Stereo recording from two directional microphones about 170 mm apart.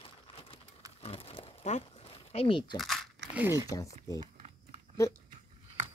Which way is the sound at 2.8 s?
Centre (ahead or behind).